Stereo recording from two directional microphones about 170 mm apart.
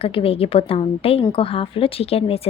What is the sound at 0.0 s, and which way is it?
A woman's voice, 35° left (ahead or behind).